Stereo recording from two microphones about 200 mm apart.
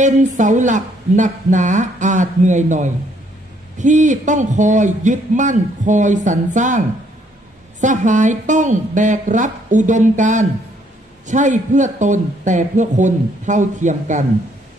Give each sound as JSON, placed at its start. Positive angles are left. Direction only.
{"t": 0.0, "sound": "speech", "side_deg": -40}
{"t": 7.8, "sound": "speech", "side_deg": -40}